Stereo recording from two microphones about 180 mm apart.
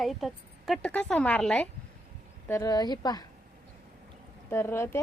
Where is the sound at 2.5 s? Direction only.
20° left (ahead or behind).